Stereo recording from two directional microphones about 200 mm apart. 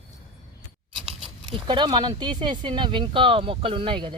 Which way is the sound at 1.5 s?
25° right (ahead or behind).